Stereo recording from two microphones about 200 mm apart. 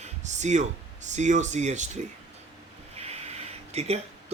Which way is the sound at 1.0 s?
35° right (ahead or behind).